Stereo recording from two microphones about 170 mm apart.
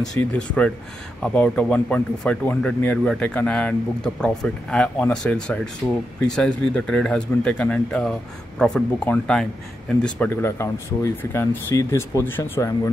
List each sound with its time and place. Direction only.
0.1 s speech: 5° left (ahead or behind)